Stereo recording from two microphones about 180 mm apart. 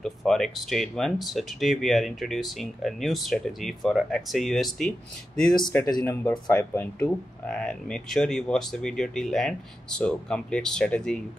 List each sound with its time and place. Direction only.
0.0 s speech: centre (ahead or behind)
5.9 s speech: 20° left (ahead or behind)
6.5 s speech: 10° left (ahead or behind)